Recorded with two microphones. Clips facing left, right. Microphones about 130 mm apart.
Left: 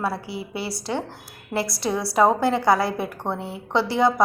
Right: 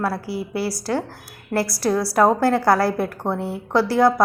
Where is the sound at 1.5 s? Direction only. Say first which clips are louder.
Right 4 dB; 25° left (ahead or behind).